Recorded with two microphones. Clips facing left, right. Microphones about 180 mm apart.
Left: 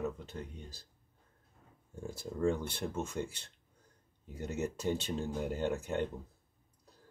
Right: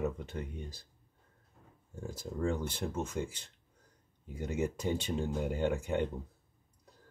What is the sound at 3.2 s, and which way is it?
Speech, 5° right (ahead or behind).